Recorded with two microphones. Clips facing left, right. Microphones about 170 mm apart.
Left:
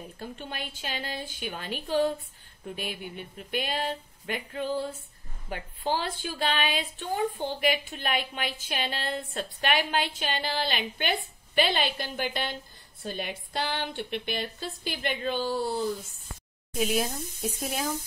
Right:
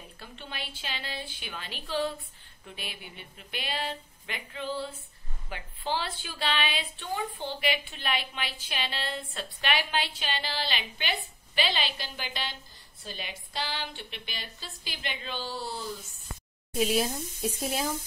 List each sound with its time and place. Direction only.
0.2 s a woman's voice: 45° left (ahead or behind)
16.7 s speech: centre (ahead or behind)